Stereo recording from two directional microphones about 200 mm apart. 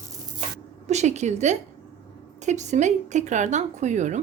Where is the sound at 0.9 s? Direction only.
35° right (ahead or behind).